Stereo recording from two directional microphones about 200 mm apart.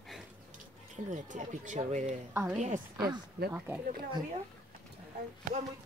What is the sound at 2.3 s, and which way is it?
A woman's voice, 10° right (ahead or behind).